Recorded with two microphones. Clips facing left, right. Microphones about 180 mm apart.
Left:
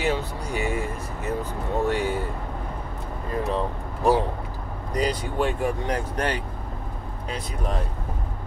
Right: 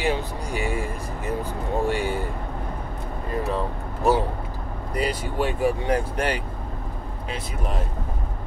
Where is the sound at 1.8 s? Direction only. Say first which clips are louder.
Left 1 dB; 10° right (ahead or behind).